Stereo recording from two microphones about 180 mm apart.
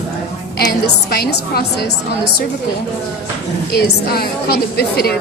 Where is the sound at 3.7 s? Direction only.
60° left (ahead or behind).